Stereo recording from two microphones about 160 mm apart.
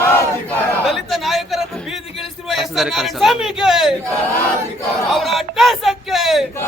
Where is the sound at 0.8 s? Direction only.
Centre (ahead or behind).